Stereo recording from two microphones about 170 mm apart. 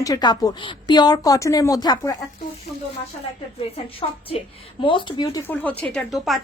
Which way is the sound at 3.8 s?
35° left (ahead or behind).